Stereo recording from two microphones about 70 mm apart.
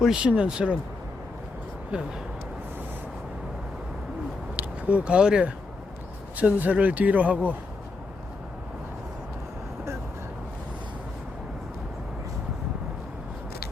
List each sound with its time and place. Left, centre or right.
0.0 s speech: centre
1.9 s speech: centre
4.5 s speech: centre